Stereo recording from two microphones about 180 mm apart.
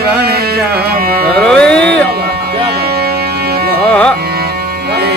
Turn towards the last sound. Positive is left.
turn(degrees=5)  # may be behind; listen again after turning